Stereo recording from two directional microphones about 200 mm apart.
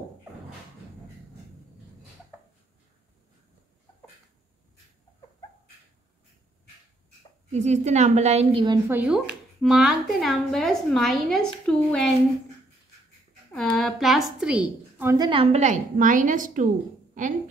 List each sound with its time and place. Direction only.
7.5 s a woman's voice: 35° right (ahead or behind)
8.6 s speech: 10° right (ahead or behind)
13.6 s a woman's voice: centre (ahead or behind)
15.0 s a woman's voice: 15° right (ahead or behind); by 17.3 s 40° right (ahead or behind)